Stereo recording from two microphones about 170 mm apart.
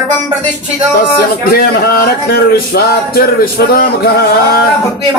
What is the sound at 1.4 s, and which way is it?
Music, 60° left (ahead or behind).